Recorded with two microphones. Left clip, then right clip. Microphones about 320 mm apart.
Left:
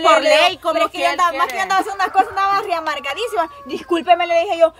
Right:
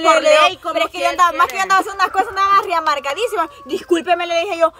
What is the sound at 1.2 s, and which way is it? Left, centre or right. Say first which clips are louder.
Speech: right 7 dB; centre.